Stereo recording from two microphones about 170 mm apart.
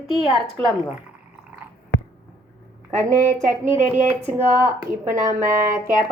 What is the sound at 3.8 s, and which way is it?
Speech, 15° right (ahead or behind).